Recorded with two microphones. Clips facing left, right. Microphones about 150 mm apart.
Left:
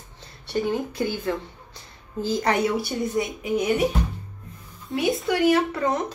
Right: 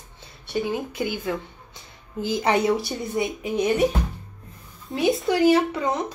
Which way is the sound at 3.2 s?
20° right (ahead or behind).